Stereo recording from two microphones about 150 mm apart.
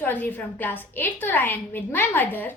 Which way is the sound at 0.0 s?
10° left (ahead or behind).